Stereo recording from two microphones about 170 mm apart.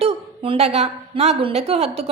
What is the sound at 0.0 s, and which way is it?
A woman's voice, 35° right (ahead or behind).